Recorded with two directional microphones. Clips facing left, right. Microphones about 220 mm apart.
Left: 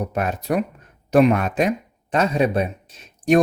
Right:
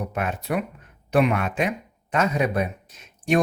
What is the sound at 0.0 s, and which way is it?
Speech, 40° left (ahead or behind).